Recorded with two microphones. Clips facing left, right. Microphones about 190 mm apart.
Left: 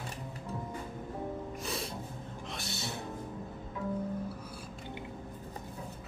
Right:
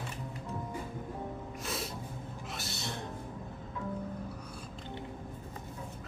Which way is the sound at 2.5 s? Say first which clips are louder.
Left 1 dB; centre (ahead or behind).